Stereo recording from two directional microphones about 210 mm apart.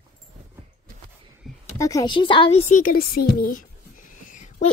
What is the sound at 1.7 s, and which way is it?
A woman's voice, 15° left (ahead or behind).